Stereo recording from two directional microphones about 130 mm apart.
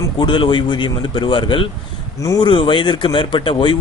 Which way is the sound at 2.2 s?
25° left (ahead or behind).